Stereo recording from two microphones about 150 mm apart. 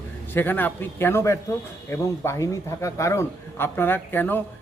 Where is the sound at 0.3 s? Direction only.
15° left (ahead or behind).